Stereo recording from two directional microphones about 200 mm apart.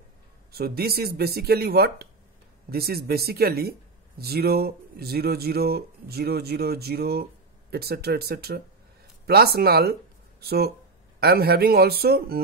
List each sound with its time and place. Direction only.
0.5 s speech: 50° right (ahead or behind)